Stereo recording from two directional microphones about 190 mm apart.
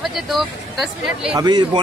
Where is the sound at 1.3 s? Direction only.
20° right (ahead or behind).